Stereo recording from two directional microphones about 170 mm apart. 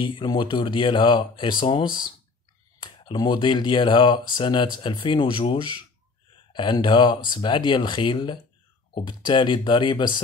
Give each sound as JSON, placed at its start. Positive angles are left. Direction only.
{"t": 0.0, "sound": "speech", "side_deg": 25}